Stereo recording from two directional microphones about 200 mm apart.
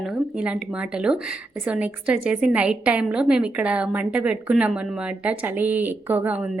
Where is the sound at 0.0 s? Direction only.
5° right (ahead or behind).